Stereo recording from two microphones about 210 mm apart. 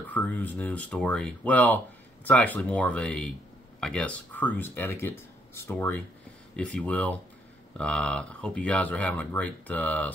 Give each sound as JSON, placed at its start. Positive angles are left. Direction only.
{"t": 0.1, "sound": "speech", "side_deg": 10}